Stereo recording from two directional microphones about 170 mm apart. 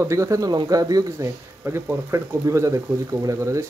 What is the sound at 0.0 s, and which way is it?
Speech, 15° right (ahead or behind).